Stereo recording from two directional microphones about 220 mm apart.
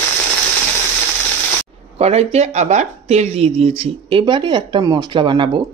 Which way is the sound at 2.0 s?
30° right (ahead or behind).